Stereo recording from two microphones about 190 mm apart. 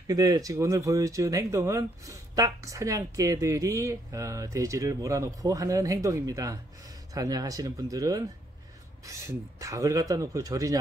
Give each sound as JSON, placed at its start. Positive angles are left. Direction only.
{"t": 0.0, "sound": "speech", "side_deg": -20}